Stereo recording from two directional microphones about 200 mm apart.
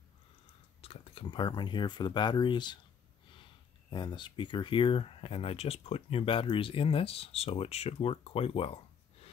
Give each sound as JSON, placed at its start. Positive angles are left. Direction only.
{"t": 0.7, "sound": "speech", "side_deg": 30}
{"t": 3.9, "sound": "speech", "side_deg": 25}